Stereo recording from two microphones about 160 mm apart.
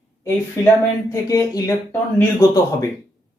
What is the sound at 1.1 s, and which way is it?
Speech, 20° left (ahead or behind).